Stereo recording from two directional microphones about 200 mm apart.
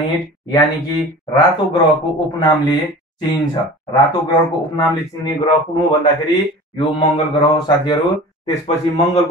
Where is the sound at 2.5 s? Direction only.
20° left (ahead or behind).